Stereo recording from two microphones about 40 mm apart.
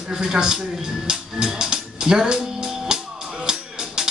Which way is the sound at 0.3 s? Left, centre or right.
Centre.